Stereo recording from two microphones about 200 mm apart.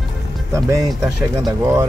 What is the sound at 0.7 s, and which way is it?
Speech, 15° right (ahead or behind).